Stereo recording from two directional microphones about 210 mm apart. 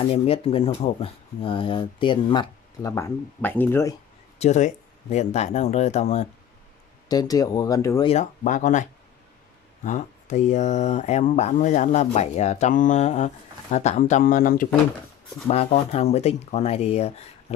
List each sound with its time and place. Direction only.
0.1 s speech: 30° left (ahead or behind); by 3.9 s 10° left (ahead or behind)
4.4 s speech: 35° left (ahead or behind)
7.1 s speech: 15° left (ahead or behind)
8.1 s speech: 35° left (ahead or behind)
9.8 s speech: 35° left (ahead or behind)
15.4 s speech: 30° left (ahead or behind)